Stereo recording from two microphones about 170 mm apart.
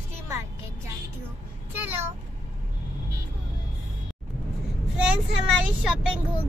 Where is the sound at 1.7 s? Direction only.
10° right (ahead or behind).